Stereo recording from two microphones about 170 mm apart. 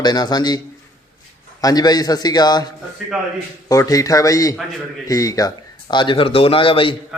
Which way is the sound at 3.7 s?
20° left (ahead or behind).